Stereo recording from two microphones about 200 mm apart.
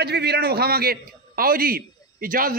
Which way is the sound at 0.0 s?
55° right (ahead or behind).